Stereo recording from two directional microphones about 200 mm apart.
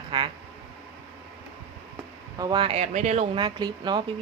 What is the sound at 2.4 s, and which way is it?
Speech, 25° right (ahead or behind).